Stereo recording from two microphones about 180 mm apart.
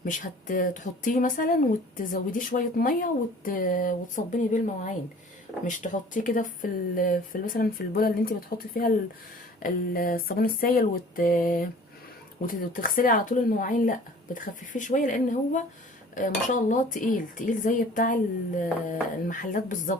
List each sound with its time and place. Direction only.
0.0 s speech: 50° left (ahead or behind)